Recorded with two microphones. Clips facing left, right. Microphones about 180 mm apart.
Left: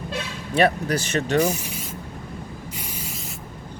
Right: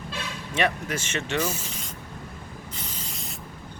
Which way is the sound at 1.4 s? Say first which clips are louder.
Left 7 dB; 15° left (ahead or behind).